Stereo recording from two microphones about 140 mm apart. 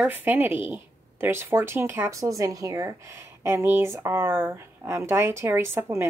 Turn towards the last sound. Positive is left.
turn(degrees=-20)  # may be behind; listen again after turning